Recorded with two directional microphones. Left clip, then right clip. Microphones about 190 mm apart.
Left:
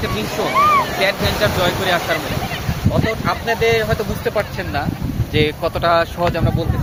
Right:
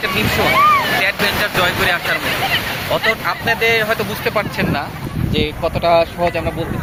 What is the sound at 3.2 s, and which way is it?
Speech, 20° left (ahead or behind).